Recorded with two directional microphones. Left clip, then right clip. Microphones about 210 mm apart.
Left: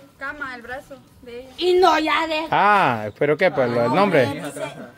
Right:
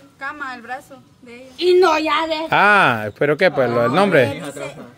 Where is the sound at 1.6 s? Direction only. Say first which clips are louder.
Right 2 dB; 15° right (ahead or behind).